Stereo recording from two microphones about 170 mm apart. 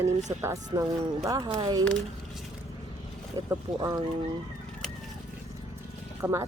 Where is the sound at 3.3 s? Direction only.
20° right (ahead or behind).